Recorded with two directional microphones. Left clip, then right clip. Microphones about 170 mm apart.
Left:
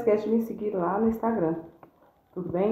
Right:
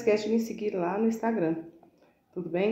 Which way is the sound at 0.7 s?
15° right (ahead or behind).